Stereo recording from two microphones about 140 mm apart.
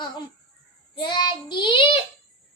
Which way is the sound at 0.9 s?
35° left (ahead or behind).